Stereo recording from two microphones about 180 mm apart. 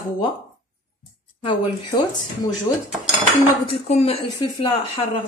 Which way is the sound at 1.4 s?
25° left (ahead or behind).